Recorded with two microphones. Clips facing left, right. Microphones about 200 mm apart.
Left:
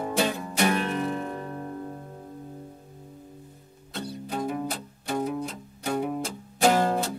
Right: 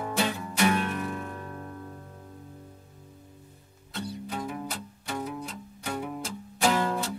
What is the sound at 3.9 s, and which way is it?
Music, 40° left (ahead or behind).